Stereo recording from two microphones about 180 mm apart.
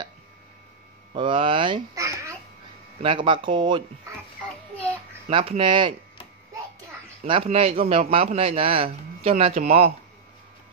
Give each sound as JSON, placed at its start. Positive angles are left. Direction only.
{"t": 1.1, "sound": "a child's voice", "side_deg": -30}
{"t": 3.0, "sound": "speech", "side_deg": -30}
{"t": 5.3, "sound": "speech", "side_deg": -30}
{"t": 7.2, "sound": "a man's voice", "side_deg": -30}